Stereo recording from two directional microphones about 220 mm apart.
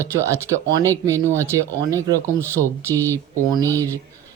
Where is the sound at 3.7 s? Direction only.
10° left (ahead or behind).